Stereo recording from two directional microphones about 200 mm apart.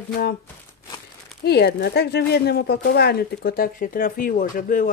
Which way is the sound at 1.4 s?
55° left (ahead or behind).